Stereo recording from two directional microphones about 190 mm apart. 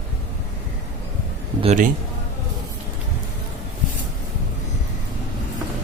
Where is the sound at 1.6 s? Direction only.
40° right (ahead or behind).